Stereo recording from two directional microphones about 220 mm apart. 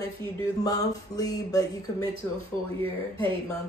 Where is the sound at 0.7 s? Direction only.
15° left (ahead or behind).